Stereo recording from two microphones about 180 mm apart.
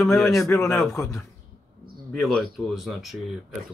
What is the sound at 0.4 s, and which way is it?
Speech, 15° left (ahead or behind).